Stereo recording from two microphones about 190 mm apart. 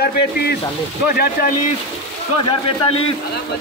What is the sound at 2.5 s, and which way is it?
Speech, 30° left (ahead or behind).